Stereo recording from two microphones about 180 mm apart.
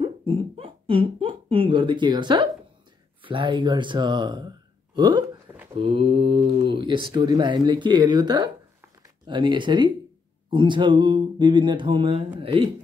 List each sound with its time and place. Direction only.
0.0 s speech: 30° right (ahead or behind)